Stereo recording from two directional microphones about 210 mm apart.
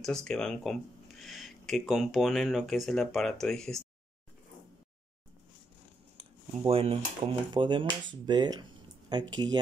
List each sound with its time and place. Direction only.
0.0 s speech: centre (ahead or behind)
6.1 s a sound: 25° right (ahead or behind)
7.2 s speech: 25° right (ahead or behind)